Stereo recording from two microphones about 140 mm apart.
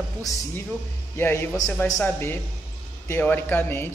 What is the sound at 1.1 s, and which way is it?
Speech, 15° left (ahead or behind).